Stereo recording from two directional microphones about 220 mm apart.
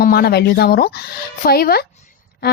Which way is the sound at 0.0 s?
45° left (ahead or behind).